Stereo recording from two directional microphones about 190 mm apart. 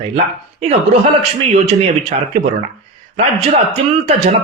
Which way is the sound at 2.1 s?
40° right (ahead or behind).